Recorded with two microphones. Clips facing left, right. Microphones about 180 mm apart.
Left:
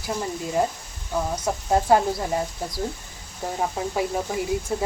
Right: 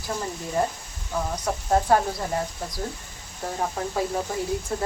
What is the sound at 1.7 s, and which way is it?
Speech, 15° left (ahead or behind).